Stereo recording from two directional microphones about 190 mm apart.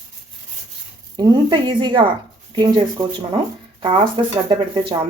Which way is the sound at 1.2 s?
20° right (ahead or behind).